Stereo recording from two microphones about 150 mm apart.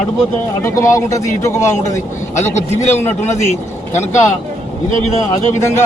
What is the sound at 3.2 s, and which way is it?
Speech, 50° left (ahead or behind).